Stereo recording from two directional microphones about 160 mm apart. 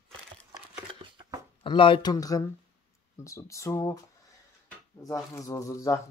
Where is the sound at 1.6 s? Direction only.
35° left (ahead or behind).